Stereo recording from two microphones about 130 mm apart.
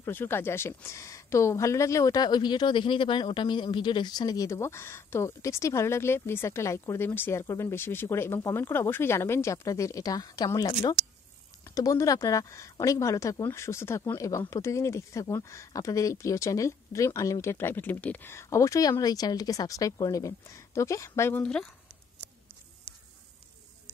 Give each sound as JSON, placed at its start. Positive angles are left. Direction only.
{"t": 0.0, "sound": "speech", "side_deg": 15}
{"t": 21.4, "sound": "speech", "side_deg": 5}